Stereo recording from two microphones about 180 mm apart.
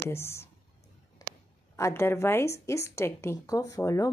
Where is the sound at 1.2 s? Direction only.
20° left (ahead or behind).